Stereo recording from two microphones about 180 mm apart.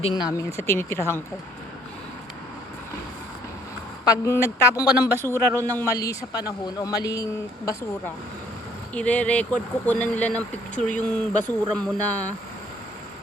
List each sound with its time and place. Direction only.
0.0 s speech: 25° left (ahead or behind)
4.0 s speech: 20° left (ahead or behind)